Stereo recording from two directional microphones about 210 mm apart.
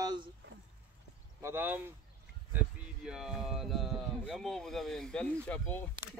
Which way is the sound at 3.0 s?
Centre (ahead or behind).